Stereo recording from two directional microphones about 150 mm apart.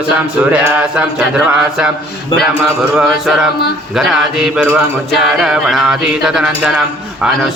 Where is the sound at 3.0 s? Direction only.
Centre (ahead or behind).